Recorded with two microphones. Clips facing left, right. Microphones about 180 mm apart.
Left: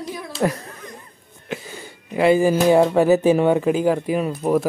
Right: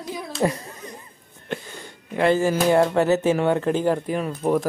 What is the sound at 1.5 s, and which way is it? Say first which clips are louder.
Speech: left 1 dB; 5° left (ahead or behind).